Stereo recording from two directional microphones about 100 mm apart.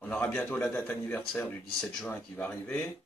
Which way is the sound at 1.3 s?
10° left (ahead or behind).